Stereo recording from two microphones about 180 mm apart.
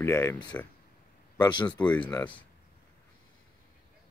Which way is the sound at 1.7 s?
10° left (ahead or behind).